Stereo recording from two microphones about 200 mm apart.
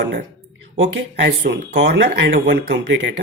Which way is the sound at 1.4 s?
55° right (ahead or behind).